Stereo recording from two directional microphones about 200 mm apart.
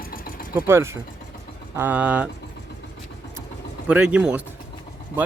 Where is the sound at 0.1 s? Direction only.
45° left (ahead or behind).